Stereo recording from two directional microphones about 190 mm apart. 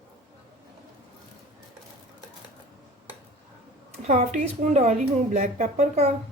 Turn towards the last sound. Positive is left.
turn(degrees=-35)  # may be behind; listen again after turning